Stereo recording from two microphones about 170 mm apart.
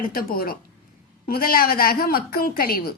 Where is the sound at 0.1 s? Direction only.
60° left (ahead or behind).